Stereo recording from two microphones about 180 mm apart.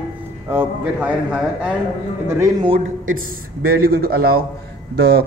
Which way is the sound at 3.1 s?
55° right (ahead or behind).